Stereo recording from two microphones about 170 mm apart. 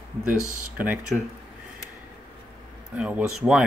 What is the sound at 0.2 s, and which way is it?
Speech, 10° right (ahead or behind).